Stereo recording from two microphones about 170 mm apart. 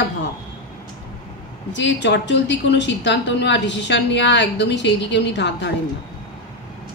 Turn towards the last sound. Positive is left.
turn(degrees=90)